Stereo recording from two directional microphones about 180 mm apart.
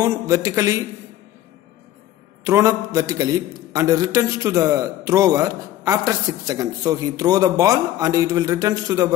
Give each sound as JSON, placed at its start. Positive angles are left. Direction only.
{"t": 0.0, "sound": "a man's voice", "side_deg": -20}
{"t": 2.4, "sound": "a man's voice", "side_deg": -15}